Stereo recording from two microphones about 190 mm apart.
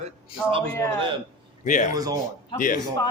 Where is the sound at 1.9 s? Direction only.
20° right (ahead or behind).